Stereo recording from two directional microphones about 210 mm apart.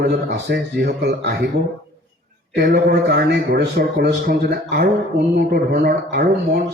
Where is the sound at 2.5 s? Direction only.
50° right (ahead or behind).